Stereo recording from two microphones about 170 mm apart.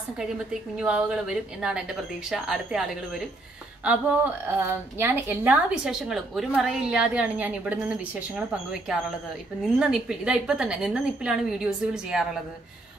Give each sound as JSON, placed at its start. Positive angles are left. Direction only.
{"t": 0.7, "sound": "a woman's voice", "side_deg": -5}